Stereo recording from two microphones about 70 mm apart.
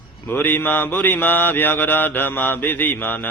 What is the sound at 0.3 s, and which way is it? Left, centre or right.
A man's voice, left.